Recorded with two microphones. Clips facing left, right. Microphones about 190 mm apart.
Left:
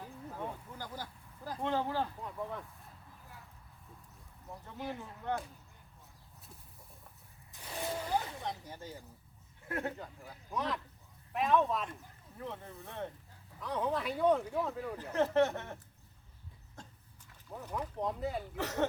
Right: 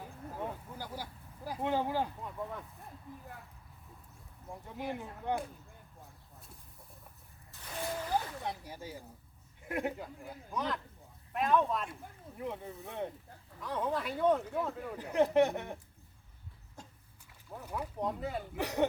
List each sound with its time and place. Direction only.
0.3 s a sound: 10° right (ahead or behind)
1.5 s speech: 10° right (ahead or behind)
2.2 s speech: centre (ahead or behind)
4.4 s speech: 15° right (ahead or behind)
7.5 s a sound: 15° left (ahead or behind)
8.1 s speech: 10° right (ahead or behind)
10.5 s speech: centre (ahead or behind)
12.4 s speech: 15° right (ahead or behind)
13.6 s speech: centre (ahead or behind)
14.9 s speech: 15° right (ahead or behind)
16.8 s a sound: 10° right (ahead or behind)
17.5 s speech: 10° right (ahead or behind)
18.5 s speech: 15° right (ahead or behind)